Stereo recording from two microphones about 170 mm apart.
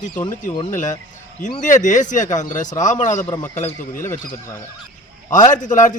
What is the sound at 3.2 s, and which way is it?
Speech, 20° left (ahead or behind).